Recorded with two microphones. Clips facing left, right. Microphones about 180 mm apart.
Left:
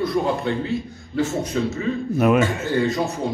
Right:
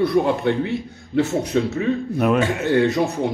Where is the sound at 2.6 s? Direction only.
65° right (ahead or behind).